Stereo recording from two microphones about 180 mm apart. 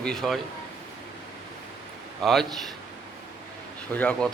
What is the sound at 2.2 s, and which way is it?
Speech, centre (ahead or behind).